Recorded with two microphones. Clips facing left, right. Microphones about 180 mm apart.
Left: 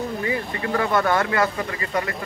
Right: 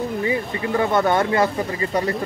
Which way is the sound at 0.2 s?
25° right (ahead or behind).